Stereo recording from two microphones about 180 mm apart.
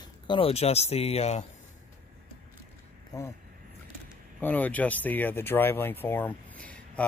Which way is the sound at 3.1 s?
20° left (ahead or behind).